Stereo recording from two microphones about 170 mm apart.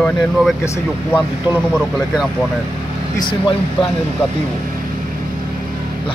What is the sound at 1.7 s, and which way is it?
Speech, 5° right (ahead or behind).